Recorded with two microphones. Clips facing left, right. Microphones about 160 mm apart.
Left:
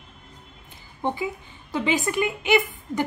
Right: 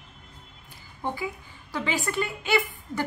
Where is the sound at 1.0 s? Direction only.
20° left (ahead or behind).